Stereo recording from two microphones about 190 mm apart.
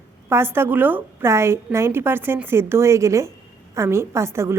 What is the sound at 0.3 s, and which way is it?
A woman's voice, 10° right (ahead or behind).